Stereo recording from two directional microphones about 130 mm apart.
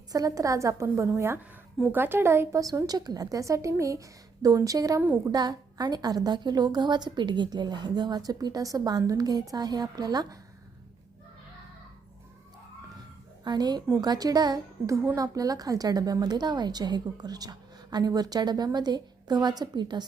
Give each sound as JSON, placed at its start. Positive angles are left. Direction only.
{"t": 0.1, "sound": "a woman's voice", "side_deg": -25}
{"t": 4.9, "sound": "a woman's voice", "side_deg": -15}
{"t": 5.3, "sound": "a woman's voice", "side_deg": -30}
{"t": 13.4, "sound": "a woman's voice", "side_deg": -35}